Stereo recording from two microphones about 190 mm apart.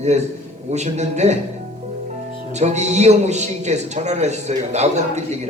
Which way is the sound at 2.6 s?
35° right (ahead or behind).